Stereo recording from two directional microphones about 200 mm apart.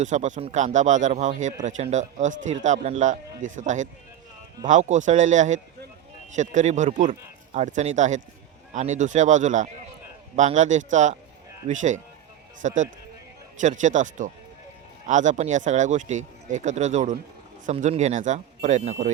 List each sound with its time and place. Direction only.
0.0 s speech: 35° right (ahead or behind)